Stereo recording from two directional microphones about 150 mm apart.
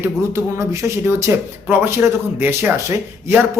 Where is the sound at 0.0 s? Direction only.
15° right (ahead or behind).